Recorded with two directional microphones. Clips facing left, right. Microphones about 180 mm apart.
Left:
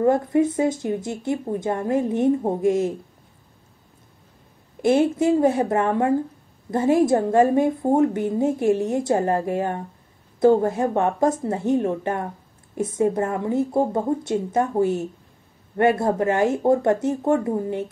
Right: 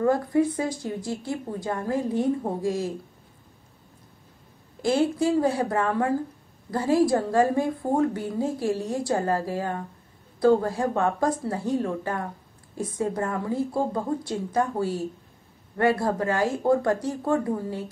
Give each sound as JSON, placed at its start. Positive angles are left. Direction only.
{"t": 0.0, "sound": "a woman's voice", "side_deg": 20}
{"t": 4.8, "sound": "a woman's voice", "side_deg": 20}